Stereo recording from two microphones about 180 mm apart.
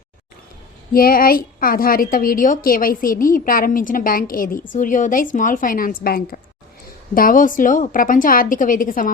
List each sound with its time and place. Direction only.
0.9 s a woman's voice: 55° left (ahead or behind)